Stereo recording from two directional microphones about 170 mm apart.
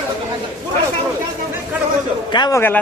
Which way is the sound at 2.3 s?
25° left (ahead or behind).